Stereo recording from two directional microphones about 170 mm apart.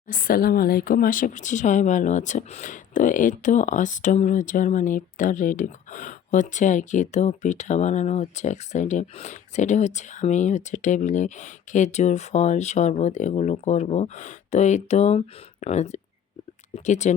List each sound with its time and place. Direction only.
0.1 s speech: 55° left (ahead or behind)